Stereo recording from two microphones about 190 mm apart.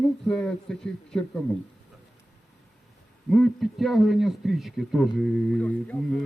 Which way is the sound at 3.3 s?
Centre (ahead or behind).